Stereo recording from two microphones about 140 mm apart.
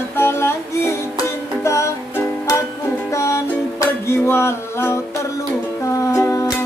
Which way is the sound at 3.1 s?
20° left (ahead or behind).